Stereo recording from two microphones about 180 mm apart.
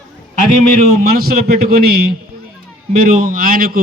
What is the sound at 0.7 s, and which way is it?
A man's voice, 50° right (ahead or behind).